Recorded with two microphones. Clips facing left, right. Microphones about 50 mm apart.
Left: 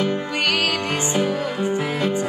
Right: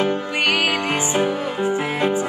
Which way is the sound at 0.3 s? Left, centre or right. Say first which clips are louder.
Right 2 dB; centre.